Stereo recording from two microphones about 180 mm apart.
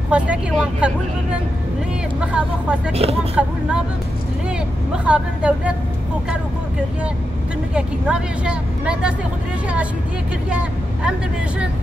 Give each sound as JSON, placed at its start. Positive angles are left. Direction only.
{"t": 0.1, "sound": "speech", "side_deg": -5}
{"t": 2.1, "sound": "speech", "side_deg": -5}
{"t": 2.9, "sound": "speech", "side_deg": -35}
{"t": 3.4, "sound": "speech", "side_deg": -5}
{"t": 5.0, "sound": "speech", "side_deg": -5}
{"t": 7.7, "sound": "speech", "side_deg": -5}
{"t": 10.5, "sound": "speech", "side_deg": -5}